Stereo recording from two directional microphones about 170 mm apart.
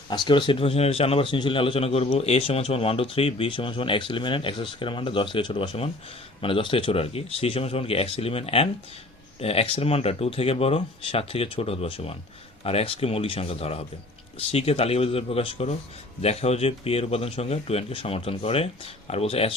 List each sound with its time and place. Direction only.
0.1 s a man's voice: 30° left (ahead or behind)